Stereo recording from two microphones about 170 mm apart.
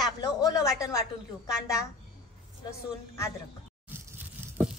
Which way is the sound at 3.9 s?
10° right (ahead or behind).